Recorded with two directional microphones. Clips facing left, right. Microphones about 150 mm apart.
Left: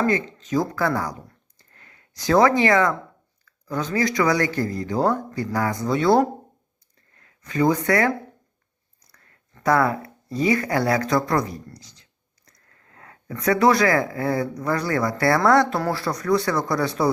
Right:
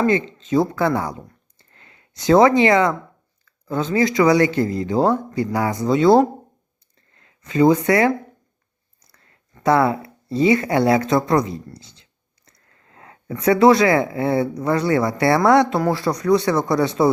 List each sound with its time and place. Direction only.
0.0 s speech: 20° right (ahead or behind)
9.1 s speech: 25° right (ahead or behind)